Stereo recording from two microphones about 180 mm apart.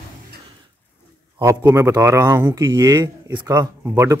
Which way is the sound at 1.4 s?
15° right (ahead or behind).